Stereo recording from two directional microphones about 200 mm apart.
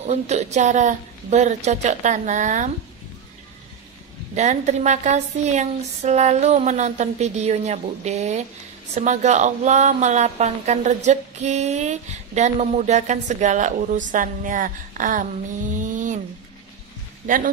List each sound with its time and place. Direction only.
0.0 s a woman's voice: 35° right (ahead or behind)
4.4 s a woman's voice: 35° right (ahead or behind)
15.8 s a sound: 40° right (ahead or behind)